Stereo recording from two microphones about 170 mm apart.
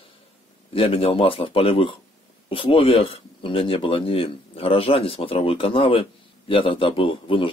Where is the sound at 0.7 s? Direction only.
35° left (ahead or behind).